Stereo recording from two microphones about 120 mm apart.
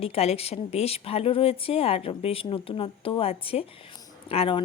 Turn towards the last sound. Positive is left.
turn(degrees=50)  # may be behind; listen again after turning